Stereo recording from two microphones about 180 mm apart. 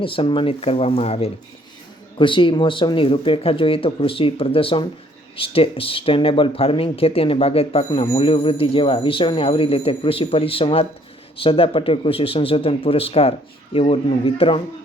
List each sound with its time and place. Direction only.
0.0 s speech: 30° left (ahead or behind)